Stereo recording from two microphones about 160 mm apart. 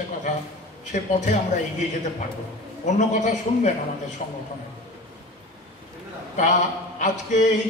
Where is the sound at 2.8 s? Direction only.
50° left (ahead or behind).